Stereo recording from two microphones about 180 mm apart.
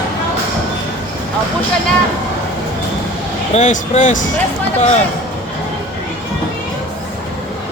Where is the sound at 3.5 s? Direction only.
45° left (ahead or behind).